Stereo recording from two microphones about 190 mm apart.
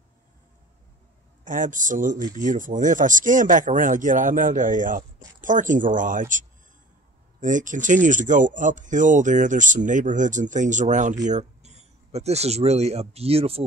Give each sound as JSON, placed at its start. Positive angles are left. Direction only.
{"t": 1.4, "sound": "speech", "side_deg": -45}